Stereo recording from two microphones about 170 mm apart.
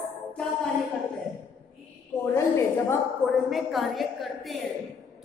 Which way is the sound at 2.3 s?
15° left (ahead or behind).